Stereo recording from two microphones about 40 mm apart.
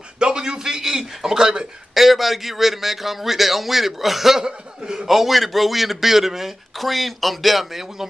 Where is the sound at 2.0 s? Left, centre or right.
Centre.